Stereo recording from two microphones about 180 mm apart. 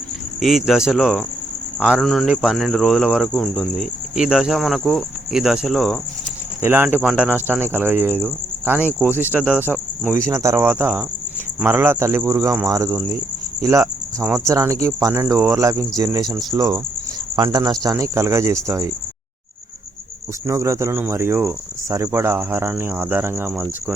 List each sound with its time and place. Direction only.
0.3 s speech: centre (ahead or behind)
6.6 s cricket: 10° right (ahead or behind)
13.6 s speech: 15° right (ahead or behind)
14.3 s cricket: 15° right (ahead or behind)
16.0 s speech: 20° right (ahead or behind)
17.8 s cricket: 15° right (ahead or behind)
20.5 s cricket: 15° right (ahead or behind)